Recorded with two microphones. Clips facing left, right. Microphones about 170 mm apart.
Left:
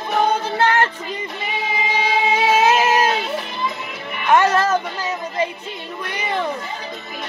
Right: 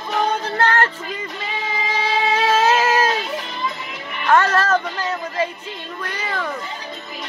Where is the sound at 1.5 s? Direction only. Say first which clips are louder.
Left 2 dB; 15° left (ahead or behind).